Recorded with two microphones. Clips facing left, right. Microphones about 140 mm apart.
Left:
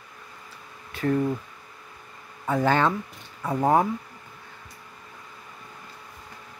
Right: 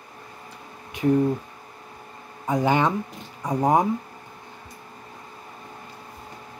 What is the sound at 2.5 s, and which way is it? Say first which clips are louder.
Speech: right 1 dB; 15° right (ahead or behind).